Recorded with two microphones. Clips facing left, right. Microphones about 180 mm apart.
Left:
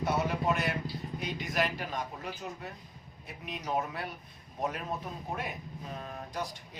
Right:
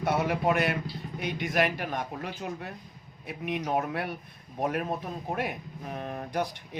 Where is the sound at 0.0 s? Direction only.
60° right (ahead or behind).